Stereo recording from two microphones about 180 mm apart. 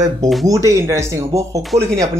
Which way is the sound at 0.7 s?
15° right (ahead or behind).